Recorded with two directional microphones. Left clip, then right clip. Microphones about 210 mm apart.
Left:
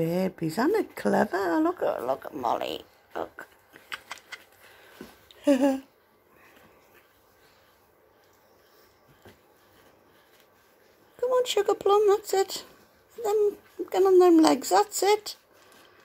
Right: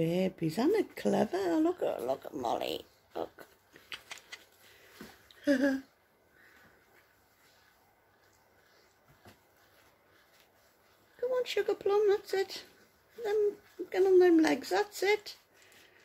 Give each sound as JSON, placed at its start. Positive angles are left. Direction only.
{"t": 0.0, "sound": "speech", "side_deg": 0}
{"t": 5.3, "sound": "a sound", "side_deg": 20}
{"t": 11.2, "sound": "speech", "side_deg": 25}
{"t": 13.8, "sound": "speech", "side_deg": 25}